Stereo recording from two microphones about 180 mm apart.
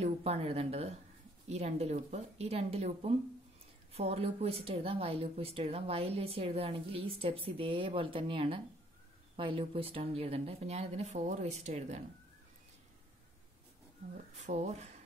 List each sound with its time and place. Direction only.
0.0 s speech: 35° right (ahead or behind)
14.1 s speech: 40° right (ahead or behind)